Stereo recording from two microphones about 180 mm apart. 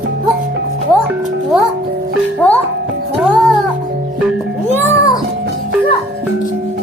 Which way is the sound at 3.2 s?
Centre (ahead or behind).